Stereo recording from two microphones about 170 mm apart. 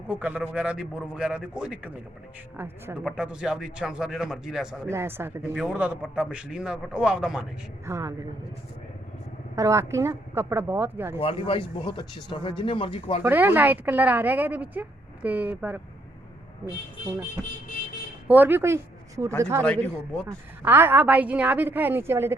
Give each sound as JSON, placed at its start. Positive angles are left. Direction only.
{"t": 0.1, "sound": "a woman's voice", "side_deg": -10}
{"t": 4.9, "sound": "a woman's voice", "side_deg": -15}
{"t": 7.9, "sound": "a woman's voice", "side_deg": -20}
{"t": 9.6, "sound": "a woman's voice", "side_deg": -20}
{"t": 11.2, "sound": "speech", "side_deg": 30}
{"t": 13.2, "sound": "a woman's voice", "side_deg": -10}
{"t": 18.3, "sound": "a woman's voice", "side_deg": -10}
{"t": 19.6, "sound": "a man's voice", "side_deg": 5}
{"t": 20.2, "sound": "a woman's voice", "side_deg": -10}